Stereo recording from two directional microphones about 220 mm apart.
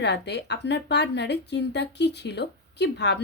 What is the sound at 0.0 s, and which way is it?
A woman's voice, 50° left (ahead or behind).